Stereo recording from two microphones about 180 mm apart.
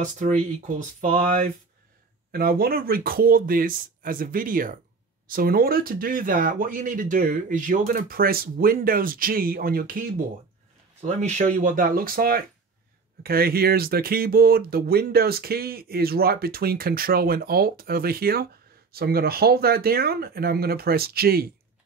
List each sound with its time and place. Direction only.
0.0 s speech: 45° right (ahead or behind)
2.3 s speech: 55° right (ahead or behind)
11.0 s speech: 40° right (ahead or behind); by 21.5 s 60° right (ahead or behind)